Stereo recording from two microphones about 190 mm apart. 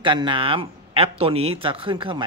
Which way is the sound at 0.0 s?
25° right (ahead or behind).